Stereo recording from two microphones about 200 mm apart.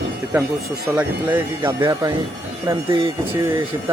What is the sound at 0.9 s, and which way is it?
Speech, 10° right (ahead or behind).